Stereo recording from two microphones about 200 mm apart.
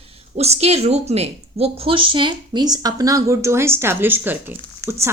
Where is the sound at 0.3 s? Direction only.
30° right (ahead or behind).